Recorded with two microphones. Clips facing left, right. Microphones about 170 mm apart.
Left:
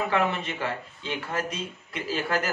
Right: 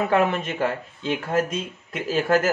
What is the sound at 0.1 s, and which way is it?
Speech, 45° right (ahead or behind).